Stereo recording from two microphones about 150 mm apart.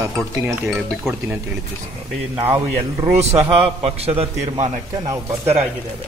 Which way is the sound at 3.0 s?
40° right (ahead or behind).